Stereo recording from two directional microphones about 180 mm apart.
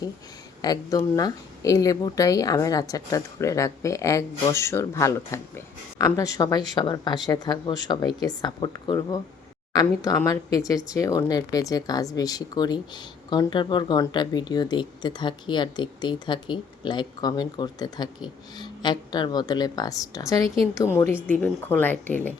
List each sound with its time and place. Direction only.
0.6 s speech: 20° left (ahead or behind)